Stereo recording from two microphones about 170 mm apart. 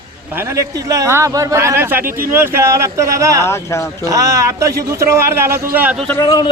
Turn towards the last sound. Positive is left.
turn(degrees=20)  # may be behind; listen again after turning